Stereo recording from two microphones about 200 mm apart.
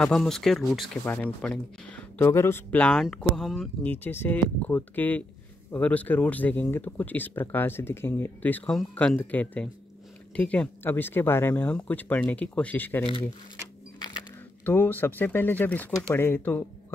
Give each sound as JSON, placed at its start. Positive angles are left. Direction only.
{"t": 0.0, "sound": "speech", "side_deg": 0}
{"t": 13.0, "sound": "speech", "side_deg": 25}
{"t": 14.6, "sound": "speech", "side_deg": 10}